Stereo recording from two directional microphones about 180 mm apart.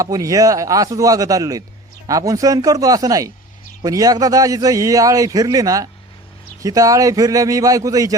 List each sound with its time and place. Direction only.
0.0 s a man's voice: 20° right (ahead or behind)